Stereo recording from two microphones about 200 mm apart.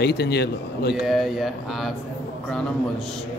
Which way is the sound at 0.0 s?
55° left (ahead or behind).